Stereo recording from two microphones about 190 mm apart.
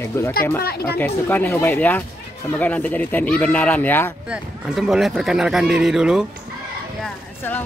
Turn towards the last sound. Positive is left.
turn(degrees=10)  # may be behind; listen again after turning